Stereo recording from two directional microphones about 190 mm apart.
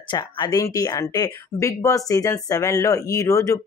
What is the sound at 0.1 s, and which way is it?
Speech, 20° left (ahead or behind).